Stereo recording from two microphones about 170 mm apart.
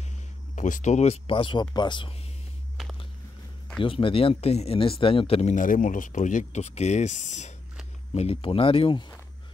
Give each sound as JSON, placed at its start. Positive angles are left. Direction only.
{"t": 0.6, "sound": "speech", "side_deg": 50}
{"t": 3.8, "sound": "speech", "side_deg": 30}